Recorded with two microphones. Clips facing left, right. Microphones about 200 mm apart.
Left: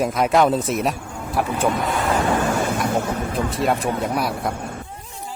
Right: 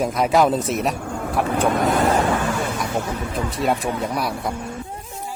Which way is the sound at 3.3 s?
Centre (ahead or behind).